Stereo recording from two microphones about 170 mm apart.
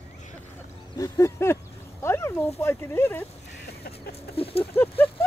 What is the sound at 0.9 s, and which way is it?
Speech, 15° left (ahead or behind).